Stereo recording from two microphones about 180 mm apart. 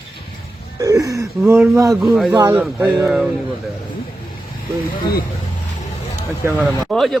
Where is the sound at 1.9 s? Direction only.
Centre (ahead or behind).